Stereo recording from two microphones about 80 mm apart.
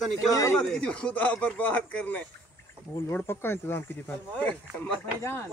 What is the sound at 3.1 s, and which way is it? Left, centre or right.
Speech, left.